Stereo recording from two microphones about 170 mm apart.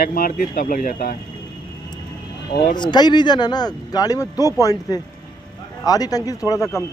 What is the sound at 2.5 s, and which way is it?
Speech, 55° left (ahead or behind).